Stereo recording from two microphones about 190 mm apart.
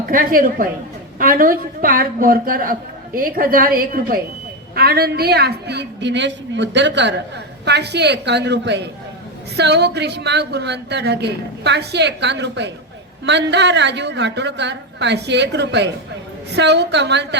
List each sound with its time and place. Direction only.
0.0 s a woman's voice: 50° right (ahead or behind); by 17.2 s 65° right (ahead or behind)